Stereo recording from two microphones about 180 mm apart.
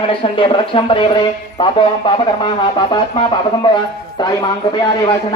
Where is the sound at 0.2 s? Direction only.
30° left (ahead or behind).